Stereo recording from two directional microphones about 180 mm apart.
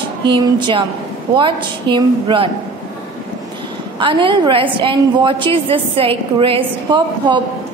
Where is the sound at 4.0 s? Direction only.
25° right (ahead or behind).